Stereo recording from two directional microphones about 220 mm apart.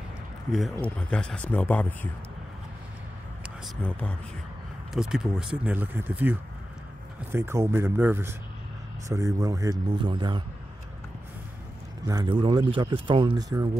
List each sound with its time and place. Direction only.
0.5 s speech: centre (ahead or behind)
3.6 s speech: 5° left (ahead or behind)
7.3 s speech: 10° right (ahead or behind)
12.1 s speech: 20° right (ahead or behind)